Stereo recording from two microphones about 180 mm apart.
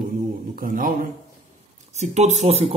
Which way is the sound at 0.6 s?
50° right (ahead or behind).